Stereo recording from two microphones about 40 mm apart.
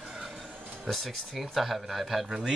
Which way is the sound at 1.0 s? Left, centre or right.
Centre.